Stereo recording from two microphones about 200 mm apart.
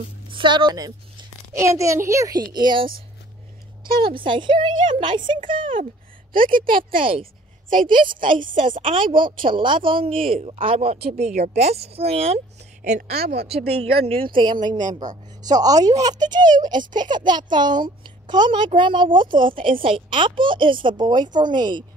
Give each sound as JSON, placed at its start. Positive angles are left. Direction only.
{"t": 0.3, "sound": "a child's voice", "side_deg": -25}
{"t": 4.2, "sound": "a child's voice", "side_deg": -25}
{"t": 6.3, "sound": "a woman's voice", "side_deg": -45}
{"t": 7.0, "sound": "a child's voice", "side_deg": -25}
{"t": 12.8, "sound": "a woman's voice", "side_deg": -45}
{"t": 13.5, "sound": "a child's voice", "side_deg": -30}